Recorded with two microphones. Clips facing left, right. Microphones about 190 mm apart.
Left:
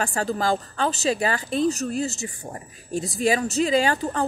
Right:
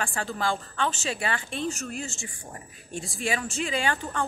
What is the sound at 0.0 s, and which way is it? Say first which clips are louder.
Speech: left 5 dB; 40° left (ahead or behind).